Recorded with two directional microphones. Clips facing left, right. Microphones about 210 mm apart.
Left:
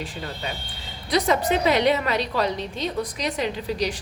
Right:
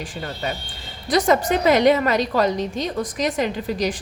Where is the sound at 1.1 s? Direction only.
45° right (ahead or behind).